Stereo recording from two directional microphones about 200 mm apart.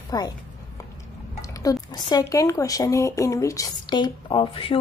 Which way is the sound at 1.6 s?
20° left (ahead or behind).